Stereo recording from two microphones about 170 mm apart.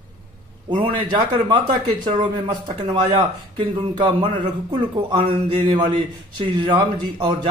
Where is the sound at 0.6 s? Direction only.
30° right (ahead or behind).